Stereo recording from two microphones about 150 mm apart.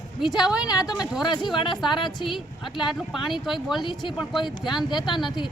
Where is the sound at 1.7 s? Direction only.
Centre (ahead or behind).